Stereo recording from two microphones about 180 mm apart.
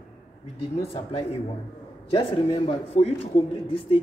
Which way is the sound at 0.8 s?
30° left (ahead or behind).